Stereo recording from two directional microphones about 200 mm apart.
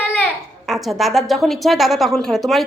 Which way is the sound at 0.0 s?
10° left (ahead or behind).